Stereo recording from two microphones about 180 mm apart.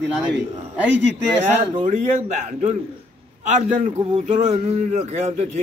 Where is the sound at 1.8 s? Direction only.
45° right (ahead or behind).